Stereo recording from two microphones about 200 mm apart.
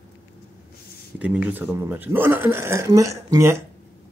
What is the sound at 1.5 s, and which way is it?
Speech, 10° right (ahead or behind).